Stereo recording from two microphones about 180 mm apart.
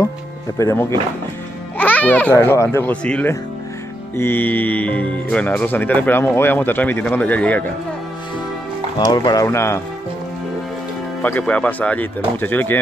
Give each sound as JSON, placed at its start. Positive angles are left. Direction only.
{"t": 0.6, "sound": "speech", "side_deg": 15}
{"t": 8.9, "sound": "speech", "side_deg": 20}
{"t": 11.2, "sound": "speech", "side_deg": 10}